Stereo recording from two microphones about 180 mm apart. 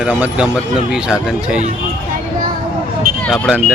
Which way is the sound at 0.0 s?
5° right (ahead or behind).